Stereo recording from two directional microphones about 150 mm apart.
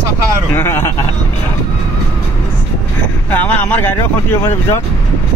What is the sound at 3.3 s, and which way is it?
Speech, 10° left (ahead or behind).